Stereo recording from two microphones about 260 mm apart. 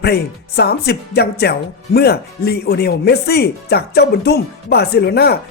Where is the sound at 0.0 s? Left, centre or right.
Left.